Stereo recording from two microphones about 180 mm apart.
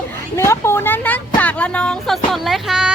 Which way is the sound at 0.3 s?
15° left (ahead or behind).